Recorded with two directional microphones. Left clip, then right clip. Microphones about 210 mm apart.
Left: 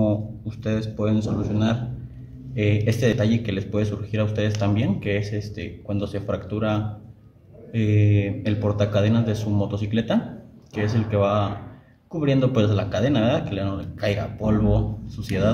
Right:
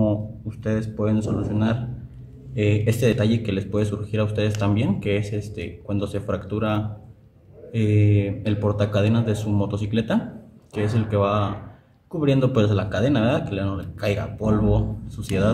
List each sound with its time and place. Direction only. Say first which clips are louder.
0.0 s speech: even; 5° right (ahead or behind)
7.9 s speech: right 1 dB; 10° right (ahead or behind)